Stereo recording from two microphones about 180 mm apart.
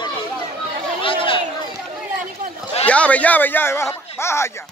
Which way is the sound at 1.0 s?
30° left (ahead or behind).